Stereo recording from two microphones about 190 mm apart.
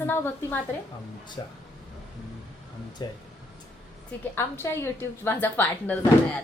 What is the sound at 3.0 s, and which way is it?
Speech, 25° left (ahead or behind).